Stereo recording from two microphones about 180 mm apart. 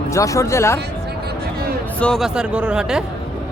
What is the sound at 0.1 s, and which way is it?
Speech, 15° left (ahead or behind).